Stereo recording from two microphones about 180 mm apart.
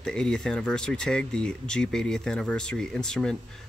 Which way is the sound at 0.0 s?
5° left (ahead or behind).